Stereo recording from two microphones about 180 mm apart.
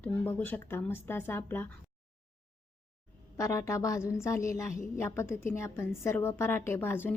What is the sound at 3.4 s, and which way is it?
A woman's voice, 15° left (ahead or behind).